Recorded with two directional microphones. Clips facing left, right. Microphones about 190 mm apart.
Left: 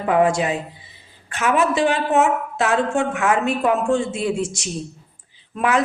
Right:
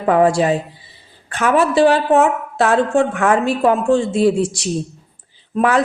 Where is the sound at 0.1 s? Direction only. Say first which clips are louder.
Right 4 dB; 35° right (ahead or behind).